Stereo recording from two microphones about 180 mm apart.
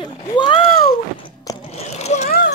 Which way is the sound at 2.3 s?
60° left (ahead or behind).